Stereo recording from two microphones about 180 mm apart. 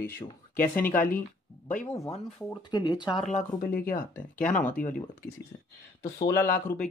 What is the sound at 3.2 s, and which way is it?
Speech, 40° left (ahead or behind).